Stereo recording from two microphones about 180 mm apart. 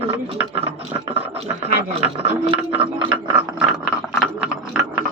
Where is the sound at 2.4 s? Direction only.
30° right (ahead or behind).